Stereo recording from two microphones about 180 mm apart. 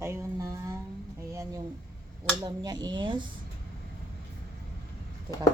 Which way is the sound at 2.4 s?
20° right (ahead or behind).